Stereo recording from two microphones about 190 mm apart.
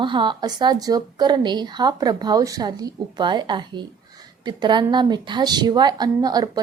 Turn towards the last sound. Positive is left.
turn(degrees=-20)  # may be behind; listen again after turning